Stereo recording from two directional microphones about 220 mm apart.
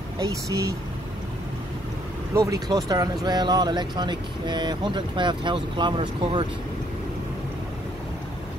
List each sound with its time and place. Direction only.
0.2 s speech: 15° right (ahead or behind)
2.3 s speech: 15° right (ahead or behind)